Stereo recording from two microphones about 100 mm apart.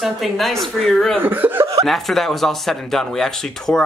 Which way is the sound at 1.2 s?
20° right (ahead or behind).